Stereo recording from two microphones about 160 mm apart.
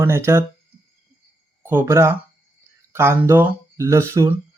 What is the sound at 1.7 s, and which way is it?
Speech, 15° right (ahead or behind).